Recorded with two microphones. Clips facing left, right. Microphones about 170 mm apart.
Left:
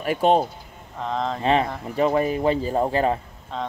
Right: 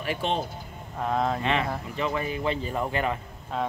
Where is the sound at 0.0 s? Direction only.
45° left (ahead or behind).